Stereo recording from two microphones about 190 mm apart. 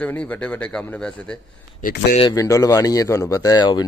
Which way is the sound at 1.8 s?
50° left (ahead or behind).